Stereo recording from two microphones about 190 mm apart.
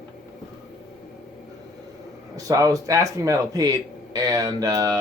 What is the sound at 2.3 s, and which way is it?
A man's voice, 20° right (ahead or behind).